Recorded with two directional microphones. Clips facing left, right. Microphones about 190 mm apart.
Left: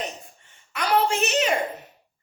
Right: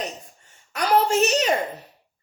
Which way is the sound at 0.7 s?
40° right (ahead or behind).